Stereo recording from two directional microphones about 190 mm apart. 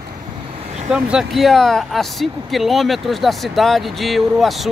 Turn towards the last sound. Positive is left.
turn(degrees=0)  # may be behind; listen again after turning